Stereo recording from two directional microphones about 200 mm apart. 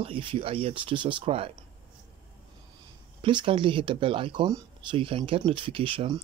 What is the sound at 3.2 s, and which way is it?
Speech, 25° right (ahead or behind).